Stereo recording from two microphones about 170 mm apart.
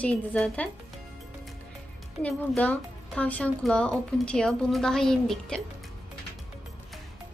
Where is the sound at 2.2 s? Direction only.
10° left (ahead or behind).